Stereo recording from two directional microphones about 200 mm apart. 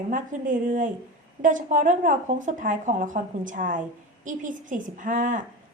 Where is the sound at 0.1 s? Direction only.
40° right (ahead or behind).